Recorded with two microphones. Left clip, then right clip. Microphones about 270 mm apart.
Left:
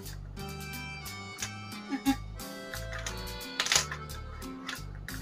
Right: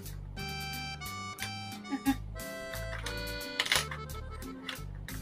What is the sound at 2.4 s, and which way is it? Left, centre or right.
Music, centre.